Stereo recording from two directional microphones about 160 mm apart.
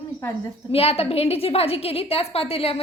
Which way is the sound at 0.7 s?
40° left (ahead or behind).